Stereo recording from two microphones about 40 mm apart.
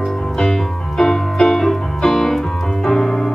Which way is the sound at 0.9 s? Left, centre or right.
Centre.